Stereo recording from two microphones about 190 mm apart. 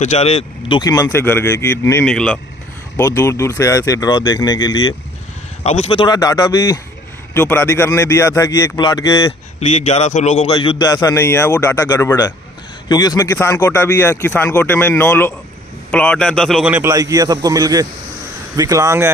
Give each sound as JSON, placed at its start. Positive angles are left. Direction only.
{"t": 0.0, "sound": "speech", "side_deg": 35}
{"t": 3.0, "sound": "speech", "side_deg": 15}
{"t": 5.6, "sound": "a man's voice", "side_deg": 35}
{"t": 9.6, "sound": "a man's voice", "side_deg": 35}